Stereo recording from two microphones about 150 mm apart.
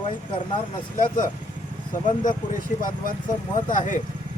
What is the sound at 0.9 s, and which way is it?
Speech, 60° left (ahead or behind).